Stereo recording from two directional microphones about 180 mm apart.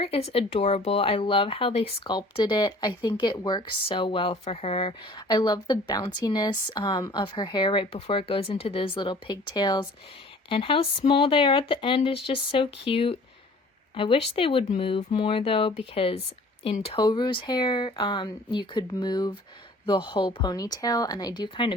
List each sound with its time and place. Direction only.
0.0 s speech: 35° left (ahead or behind)